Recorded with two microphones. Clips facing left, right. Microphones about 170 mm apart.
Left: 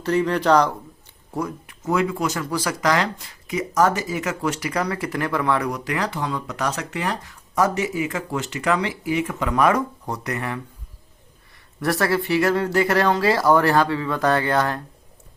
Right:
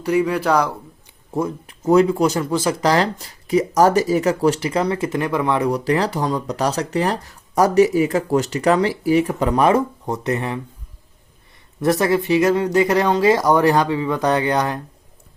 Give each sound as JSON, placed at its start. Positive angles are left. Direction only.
{"t": 0.0, "sound": "speech", "side_deg": -10}
{"t": 1.3, "sound": "speech", "side_deg": -25}
{"t": 5.7, "sound": "speech", "side_deg": -35}
{"t": 11.8, "sound": "speech", "side_deg": -20}